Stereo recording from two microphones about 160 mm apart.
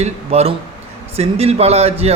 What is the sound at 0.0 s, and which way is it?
A man's voice, 40° right (ahead or behind).